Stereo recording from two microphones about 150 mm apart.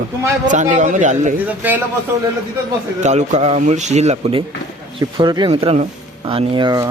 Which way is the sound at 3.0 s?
50° right (ahead or behind).